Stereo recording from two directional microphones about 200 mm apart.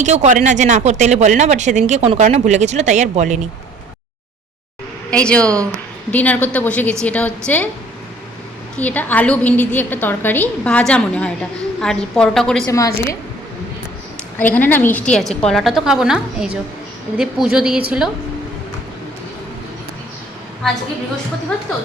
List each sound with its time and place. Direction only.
0.0 s speech: 35° right (ahead or behind)
5.1 s a woman's voice: 5° left (ahead or behind)
8.8 s a woman's voice: 10° left (ahead or behind)
12.6 s a woman's voice: 15° left (ahead or behind)
14.3 s a woman's voice: 10° left (ahead or behind)